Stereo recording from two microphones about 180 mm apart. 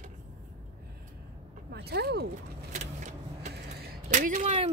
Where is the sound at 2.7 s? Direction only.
45° right (ahead or behind).